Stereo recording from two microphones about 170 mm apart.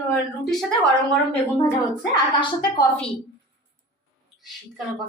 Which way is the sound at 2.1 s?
25° left (ahead or behind).